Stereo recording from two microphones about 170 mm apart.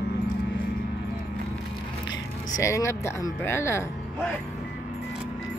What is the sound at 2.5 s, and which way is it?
Speech, 15° left (ahead or behind).